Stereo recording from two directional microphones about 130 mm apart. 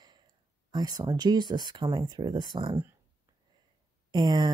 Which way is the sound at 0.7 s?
30° right (ahead or behind).